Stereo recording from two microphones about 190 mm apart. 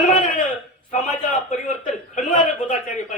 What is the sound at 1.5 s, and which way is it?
A man's voice, 40° left (ahead or behind).